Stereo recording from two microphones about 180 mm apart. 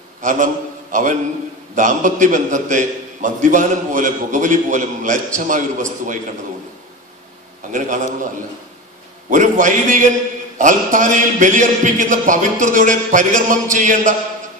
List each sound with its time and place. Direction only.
0.2 s a man's voice: 45° right (ahead or behind)
1.8 s a man's voice: 45° right (ahead or behind)
7.7 s a man's voice: 45° right (ahead or behind)
9.3 s a man's voice: 45° right (ahead or behind)